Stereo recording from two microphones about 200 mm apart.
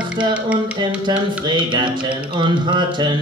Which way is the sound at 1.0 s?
25° right (ahead or behind).